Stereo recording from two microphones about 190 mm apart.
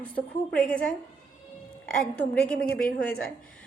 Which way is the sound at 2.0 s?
5° left (ahead or behind).